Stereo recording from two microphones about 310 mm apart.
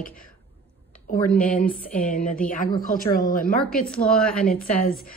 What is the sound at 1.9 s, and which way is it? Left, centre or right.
A woman's voice, left.